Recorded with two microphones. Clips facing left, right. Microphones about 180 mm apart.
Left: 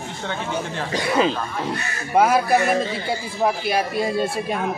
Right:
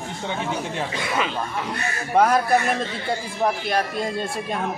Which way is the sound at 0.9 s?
35° left (ahead or behind).